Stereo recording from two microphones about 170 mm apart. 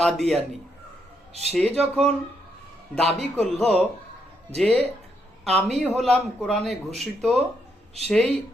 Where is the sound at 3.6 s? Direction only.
10° left (ahead or behind).